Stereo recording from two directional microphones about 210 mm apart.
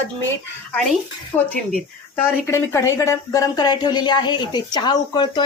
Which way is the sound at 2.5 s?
15° left (ahead or behind).